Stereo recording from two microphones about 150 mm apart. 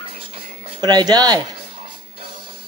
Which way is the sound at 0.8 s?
30° right (ahead or behind).